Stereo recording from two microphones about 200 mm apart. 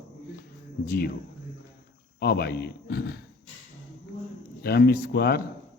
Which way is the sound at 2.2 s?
55° left (ahead or behind).